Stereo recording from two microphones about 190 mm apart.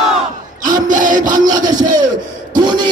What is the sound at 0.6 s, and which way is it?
Sawing, 40° right (ahead or behind).